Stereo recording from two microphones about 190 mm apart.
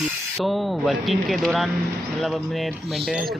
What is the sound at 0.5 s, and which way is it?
Speech, centre (ahead or behind).